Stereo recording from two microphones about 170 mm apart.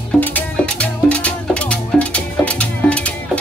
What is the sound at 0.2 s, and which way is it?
Music, 10° left (ahead or behind).